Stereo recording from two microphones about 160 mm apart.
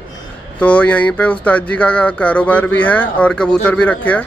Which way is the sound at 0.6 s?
10° left (ahead or behind).